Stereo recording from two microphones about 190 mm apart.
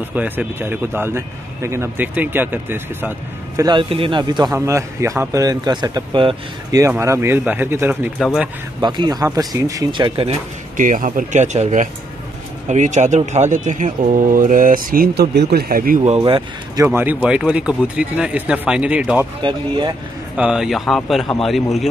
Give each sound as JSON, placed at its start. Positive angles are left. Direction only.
{"t": 0.1, "sound": "speech", "side_deg": -5}
{"t": 3.6, "sound": "speech", "side_deg": -25}
{"t": 8.8, "sound": "speech", "side_deg": -25}
{"t": 10.8, "sound": "speech", "side_deg": -45}
{"t": 16.2, "sound": "speech", "side_deg": -20}
{"t": 16.8, "sound": "speech", "side_deg": -10}
{"t": 19.4, "sound": "speech", "side_deg": -25}
{"t": 20.3, "sound": "a man's voice", "side_deg": -5}